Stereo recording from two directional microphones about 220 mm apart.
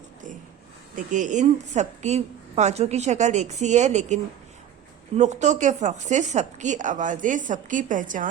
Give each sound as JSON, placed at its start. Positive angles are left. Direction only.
{"t": 0.9, "sound": "a woman's voice", "side_deg": -35}